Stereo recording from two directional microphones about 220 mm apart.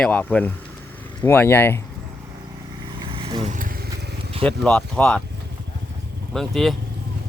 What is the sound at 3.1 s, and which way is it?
Vehicle, 25° right (ahead or behind).